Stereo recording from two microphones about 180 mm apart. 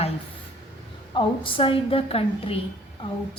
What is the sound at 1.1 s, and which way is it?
A woman's voice, 30° left (ahead or behind).